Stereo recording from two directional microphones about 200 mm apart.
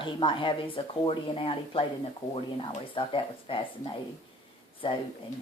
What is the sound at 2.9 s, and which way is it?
Speech, 25° left (ahead or behind).